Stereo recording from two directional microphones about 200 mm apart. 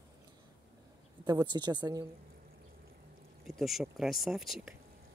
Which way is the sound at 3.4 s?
Centre (ahead or behind).